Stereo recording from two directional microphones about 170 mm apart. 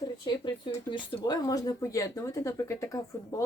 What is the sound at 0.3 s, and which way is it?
Speech, 30° left (ahead or behind).